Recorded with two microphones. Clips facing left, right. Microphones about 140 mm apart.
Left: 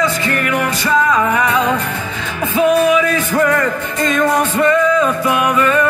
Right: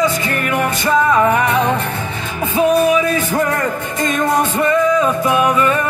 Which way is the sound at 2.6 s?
45° right (ahead or behind).